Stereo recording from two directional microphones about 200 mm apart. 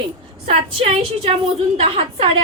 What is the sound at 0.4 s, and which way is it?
A woman's voice, 30° right (ahead or behind).